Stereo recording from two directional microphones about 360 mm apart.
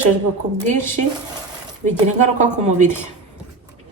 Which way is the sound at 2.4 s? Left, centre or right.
Centre.